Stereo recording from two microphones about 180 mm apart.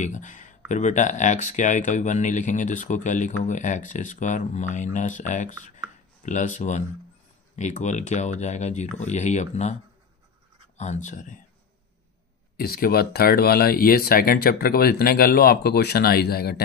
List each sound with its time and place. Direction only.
0.0 s speech: 45° left (ahead or behind)
10.8 s speech: 40° left (ahead or behind)
12.5 s speech: 55° left (ahead or behind)